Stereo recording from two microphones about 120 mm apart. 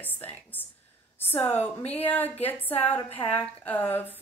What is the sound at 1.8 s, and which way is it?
Speech, 55° left (ahead or behind).